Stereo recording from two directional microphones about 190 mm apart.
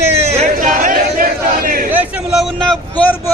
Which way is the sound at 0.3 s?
40° right (ahead or behind).